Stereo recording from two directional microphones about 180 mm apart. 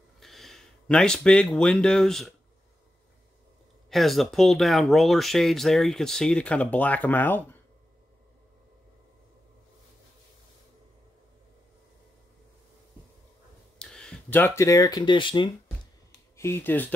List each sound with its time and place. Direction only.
0.2 s speech: centre (ahead or behind)
3.9 s speech: centre (ahead or behind)
13.7 s speech: 5° left (ahead or behind); by 15.5 s 25° left (ahead or behind)
16.3 s speech: 15° left (ahead or behind)